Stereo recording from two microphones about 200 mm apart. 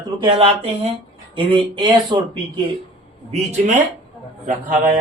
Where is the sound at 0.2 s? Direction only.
25° right (ahead or behind).